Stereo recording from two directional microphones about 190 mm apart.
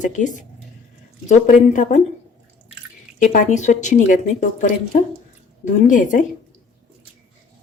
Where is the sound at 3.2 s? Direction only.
40° left (ahead or behind).